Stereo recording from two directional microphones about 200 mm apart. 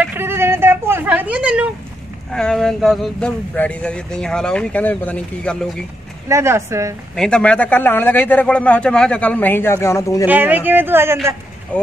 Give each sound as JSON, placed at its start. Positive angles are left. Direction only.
{"t": 0.0, "sound": "a sound", "side_deg": -10}
{"t": 2.3, "sound": "speech", "side_deg": 5}
{"t": 6.2, "sound": "speech", "side_deg": -15}
{"t": 7.2, "sound": "speech", "side_deg": 5}
{"t": 10.2, "sound": "speech", "side_deg": -10}
{"t": 11.7, "sound": "speech", "side_deg": 10}